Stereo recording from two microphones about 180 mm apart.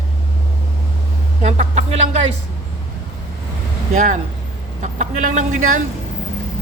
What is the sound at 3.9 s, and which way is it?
A man's voice, 45° right (ahead or behind).